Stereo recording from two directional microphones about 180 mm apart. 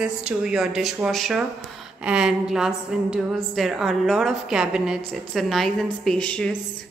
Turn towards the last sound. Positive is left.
turn(degrees=5)  # may be behind; listen again after turning